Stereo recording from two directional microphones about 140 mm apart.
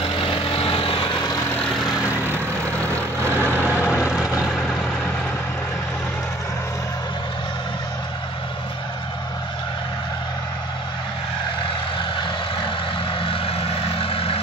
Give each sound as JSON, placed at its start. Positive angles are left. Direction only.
{"t": 0.0, "sound": "vehicle", "side_deg": 40}
{"t": 3.3, "sound": "vehicle", "side_deg": -15}
{"t": 13.2, "sound": "vehicle", "side_deg": 40}